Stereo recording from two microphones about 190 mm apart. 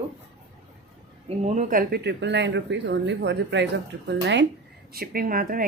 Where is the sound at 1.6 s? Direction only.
45° right (ahead or behind); by 4.5 s 65° right (ahead or behind).